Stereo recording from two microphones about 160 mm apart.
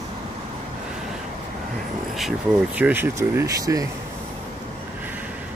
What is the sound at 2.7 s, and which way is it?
Speech, 10° right (ahead or behind).